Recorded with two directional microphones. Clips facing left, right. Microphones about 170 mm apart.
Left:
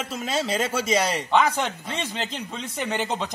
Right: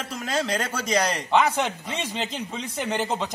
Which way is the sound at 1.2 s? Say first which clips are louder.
Even; 10° right (ahead or behind).